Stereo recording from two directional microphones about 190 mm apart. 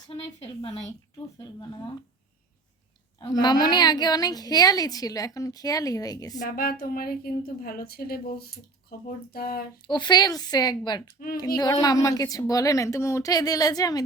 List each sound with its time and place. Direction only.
0.2 s a woman's voice: 30° left (ahead or behind)
3.2 s a woman's voice: 20° left (ahead or behind)
6.6 s a woman's voice: 50° left (ahead or behind)
9.8 s a woman's voice: 25° left (ahead or behind)